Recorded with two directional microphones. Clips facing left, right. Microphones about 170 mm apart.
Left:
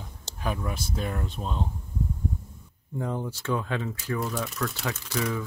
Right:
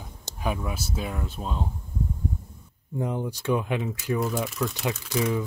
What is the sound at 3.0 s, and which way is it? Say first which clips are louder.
Speech: right 2 dB; 15° right (ahead or behind).